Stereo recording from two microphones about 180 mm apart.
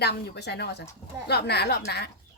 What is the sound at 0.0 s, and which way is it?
A woman's voice, 65° left (ahead or behind).